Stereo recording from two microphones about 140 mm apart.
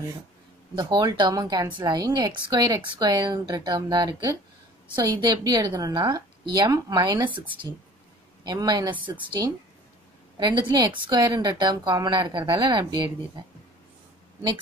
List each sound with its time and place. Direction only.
0.7 s a woman's voice: 30° right (ahead or behind)
8.5 s a woman's voice: 30° right (ahead or behind)